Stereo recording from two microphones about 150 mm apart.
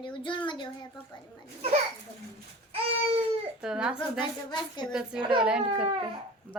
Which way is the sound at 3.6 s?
5° right (ahead or behind).